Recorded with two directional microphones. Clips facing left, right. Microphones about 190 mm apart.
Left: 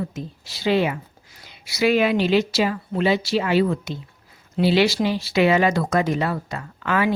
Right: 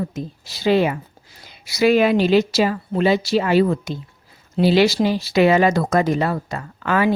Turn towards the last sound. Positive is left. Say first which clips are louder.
# right 3 dB
turn(degrees=-40)  # may be behind; listen again after turning